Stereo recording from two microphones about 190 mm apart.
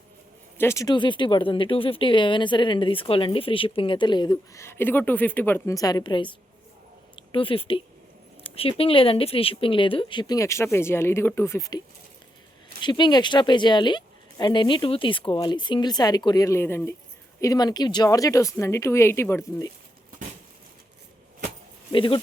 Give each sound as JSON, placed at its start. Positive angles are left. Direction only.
{"t": 0.6, "sound": "speech", "side_deg": 15}
{"t": 12.8, "sound": "speech", "side_deg": 25}
{"t": 21.9, "sound": "speech", "side_deg": 25}